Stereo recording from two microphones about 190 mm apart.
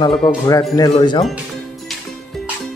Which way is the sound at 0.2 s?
25° left (ahead or behind).